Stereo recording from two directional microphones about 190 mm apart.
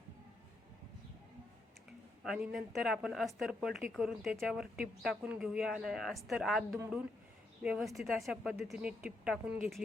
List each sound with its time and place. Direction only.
2.2 s speech: 5° right (ahead or behind)
6.7 s speech: 15° right (ahead or behind)